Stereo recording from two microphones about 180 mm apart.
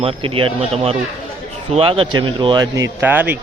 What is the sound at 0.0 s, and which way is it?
Speech, 30° right (ahead or behind).